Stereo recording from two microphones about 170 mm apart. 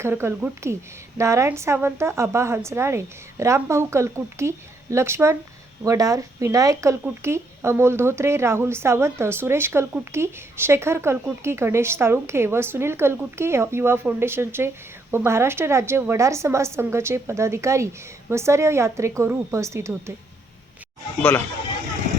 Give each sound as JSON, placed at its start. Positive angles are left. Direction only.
{"t": 0.0, "sound": "speech", "side_deg": -15}
{"t": 21.2, "sound": "speech", "side_deg": 10}